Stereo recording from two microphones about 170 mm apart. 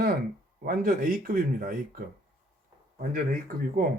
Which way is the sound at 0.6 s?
55° right (ahead or behind).